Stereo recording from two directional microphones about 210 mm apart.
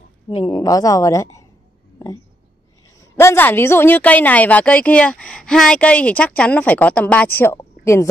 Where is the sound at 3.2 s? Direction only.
10° left (ahead or behind).